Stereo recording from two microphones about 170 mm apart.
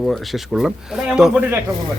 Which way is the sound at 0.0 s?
Centre (ahead or behind).